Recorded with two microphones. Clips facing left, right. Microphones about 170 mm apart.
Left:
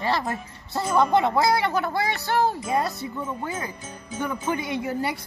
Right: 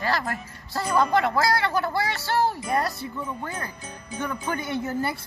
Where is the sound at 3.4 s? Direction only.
5° left (ahead or behind).